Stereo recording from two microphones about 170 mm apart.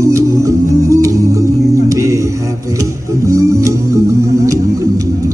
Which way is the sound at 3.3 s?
20° right (ahead or behind).